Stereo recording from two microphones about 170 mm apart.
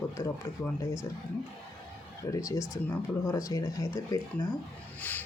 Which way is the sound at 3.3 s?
20° left (ahead or behind).